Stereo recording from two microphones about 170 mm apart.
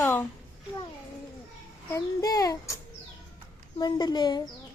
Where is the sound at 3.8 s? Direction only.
25° left (ahead or behind).